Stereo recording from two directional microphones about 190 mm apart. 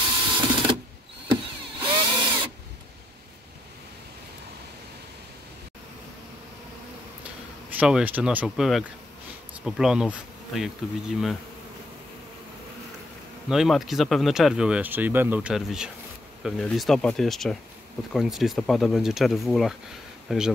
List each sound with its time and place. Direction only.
0.0 s sewing machine: 25° right (ahead or behind)
1.3 s a sound: 25° right (ahead or behind)
7.2 s speech: 5° right (ahead or behind)
13.5 s speech: centre (ahead or behind)